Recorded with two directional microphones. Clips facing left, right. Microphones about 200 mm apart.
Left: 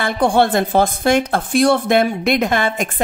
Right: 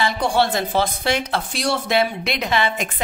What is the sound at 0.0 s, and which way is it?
A woman's voice, 55° left (ahead or behind).